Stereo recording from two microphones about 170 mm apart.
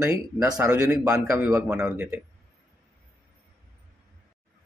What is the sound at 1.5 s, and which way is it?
Speech, 5° right (ahead or behind).